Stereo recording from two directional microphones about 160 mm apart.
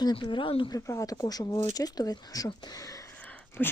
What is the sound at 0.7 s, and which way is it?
A woman's voice, 20° left (ahead or behind).